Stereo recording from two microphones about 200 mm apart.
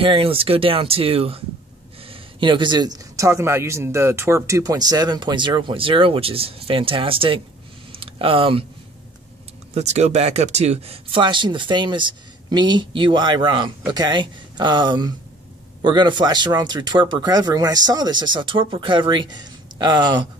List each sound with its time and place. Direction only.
0.0 s a man's voice: 25° right (ahead or behind)
7.9 s a sound: 25° right (ahead or behind)
9.8 s a man's voice: 35° right (ahead or behind)